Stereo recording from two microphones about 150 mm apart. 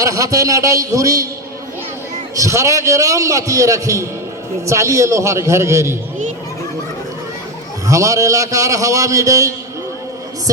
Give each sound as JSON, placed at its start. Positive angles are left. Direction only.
{"t": 0.0, "sound": "a man's voice", "side_deg": -20}
{"t": 2.3, "sound": "a man's voice", "side_deg": -20}
{"t": 7.9, "sound": "a man's voice", "side_deg": -20}